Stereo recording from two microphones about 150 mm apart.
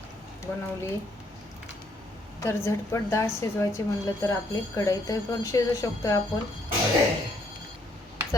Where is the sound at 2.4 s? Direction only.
20° left (ahead or behind).